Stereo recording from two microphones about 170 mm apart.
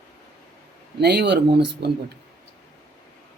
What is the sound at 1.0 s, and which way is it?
Speech, 75° right (ahead or behind).